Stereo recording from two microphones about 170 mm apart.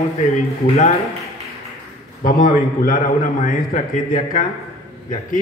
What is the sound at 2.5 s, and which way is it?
A man's voice, 55° left (ahead or behind).